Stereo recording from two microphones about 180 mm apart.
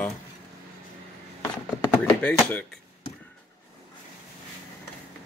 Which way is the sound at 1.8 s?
5° left (ahead or behind).